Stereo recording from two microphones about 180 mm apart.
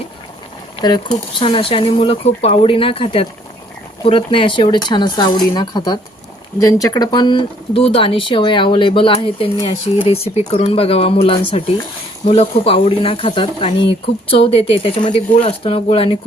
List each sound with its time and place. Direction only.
0.8 s speech: 25° left (ahead or behind)